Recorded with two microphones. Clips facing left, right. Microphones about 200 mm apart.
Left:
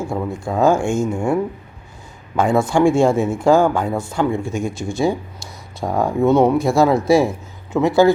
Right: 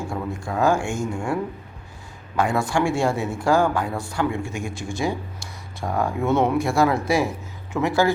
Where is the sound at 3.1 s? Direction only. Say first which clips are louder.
Left 8 dB; 50° left (ahead or behind).